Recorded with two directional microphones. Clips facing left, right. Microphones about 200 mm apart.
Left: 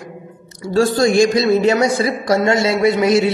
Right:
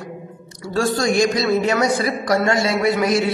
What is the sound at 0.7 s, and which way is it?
A man's voice, 30° left (ahead or behind).